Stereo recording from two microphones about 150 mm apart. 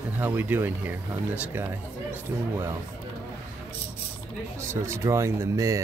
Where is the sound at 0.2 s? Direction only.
10° right (ahead or behind).